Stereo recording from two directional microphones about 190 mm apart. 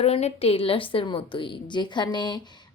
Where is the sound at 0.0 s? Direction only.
35° left (ahead or behind).